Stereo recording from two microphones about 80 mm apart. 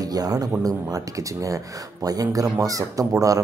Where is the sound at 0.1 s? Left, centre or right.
Right.